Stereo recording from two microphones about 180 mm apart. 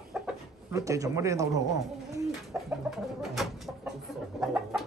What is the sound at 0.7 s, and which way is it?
Speech, 20° right (ahead or behind).